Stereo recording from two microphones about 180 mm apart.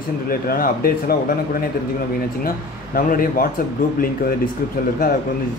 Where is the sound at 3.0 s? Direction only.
50° left (ahead or behind).